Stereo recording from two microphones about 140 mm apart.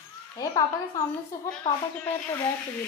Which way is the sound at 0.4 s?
25° left (ahead or behind).